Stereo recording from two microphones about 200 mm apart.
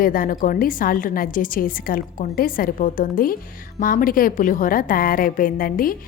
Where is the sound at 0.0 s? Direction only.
45° left (ahead or behind).